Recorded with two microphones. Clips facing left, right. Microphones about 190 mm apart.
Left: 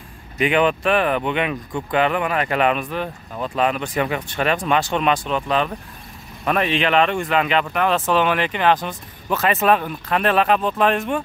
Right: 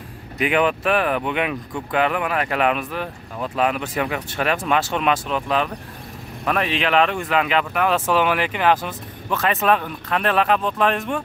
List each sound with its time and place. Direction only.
0.4 s speech: 5° right (ahead or behind)